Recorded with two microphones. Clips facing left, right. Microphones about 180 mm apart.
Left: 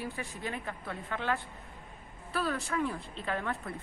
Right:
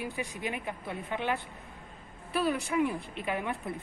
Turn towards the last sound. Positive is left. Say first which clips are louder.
# right 2 dB
turn(degrees=-15)  # may be behind; listen again after turning